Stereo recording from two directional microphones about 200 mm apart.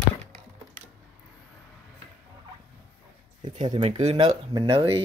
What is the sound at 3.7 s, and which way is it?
Speech, 30° right (ahead or behind).